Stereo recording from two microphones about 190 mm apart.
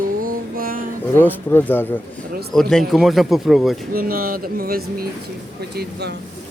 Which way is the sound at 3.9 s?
50° right (ahead or behind).